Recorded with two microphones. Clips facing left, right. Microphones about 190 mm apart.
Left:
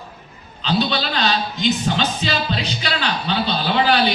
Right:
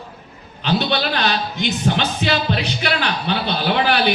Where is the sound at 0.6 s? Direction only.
60° right (ahead or behind).